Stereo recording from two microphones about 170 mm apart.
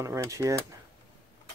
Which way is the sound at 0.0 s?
20° right (ahead or behind).